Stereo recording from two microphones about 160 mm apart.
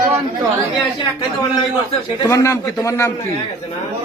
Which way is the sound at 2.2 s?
20° left (ahead or behind).